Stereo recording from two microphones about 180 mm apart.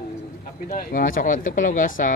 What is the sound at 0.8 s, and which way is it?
Speech, 50° left (ahead or behind).